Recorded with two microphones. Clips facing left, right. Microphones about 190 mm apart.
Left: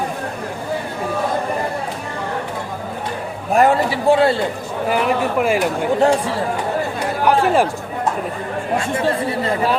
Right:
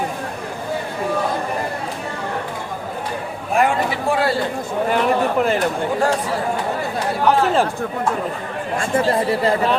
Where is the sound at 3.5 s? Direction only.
40° left (ahead or behind).